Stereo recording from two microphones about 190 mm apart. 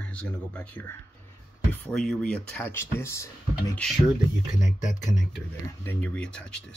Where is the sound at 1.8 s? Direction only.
Centre (ahead or behind).